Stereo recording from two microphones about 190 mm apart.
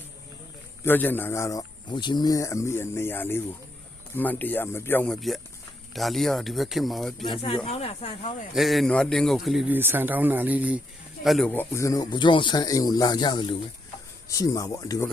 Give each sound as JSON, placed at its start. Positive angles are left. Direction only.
{"t": 0.9, "sound": "speech", "side_deg": 10}
{"t": 7.4, "sound": "speech", "side_deg": 30}
{"t": 8.5, "sound": "speech", "side_deg": 0}